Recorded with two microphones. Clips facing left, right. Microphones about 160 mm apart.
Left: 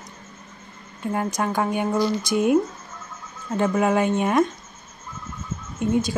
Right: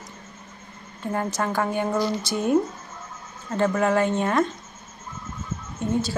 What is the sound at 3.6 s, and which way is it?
Speech, 15° left (ahead or behind).